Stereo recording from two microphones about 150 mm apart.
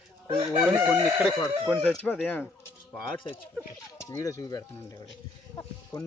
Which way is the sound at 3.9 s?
20° left (ahead or behind).